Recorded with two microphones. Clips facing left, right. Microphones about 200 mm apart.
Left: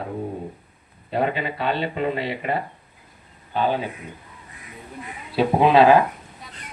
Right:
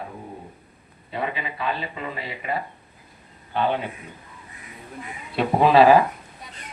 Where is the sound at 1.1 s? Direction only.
40° left (ahead or behind).